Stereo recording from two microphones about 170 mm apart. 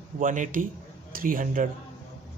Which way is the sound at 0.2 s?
50° right (ahead or behind).